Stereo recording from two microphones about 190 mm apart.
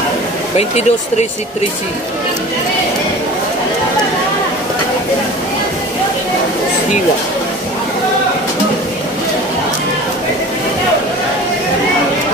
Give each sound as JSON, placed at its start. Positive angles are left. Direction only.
{"t": 0.6, "sound": "speech", "side_deg": 35}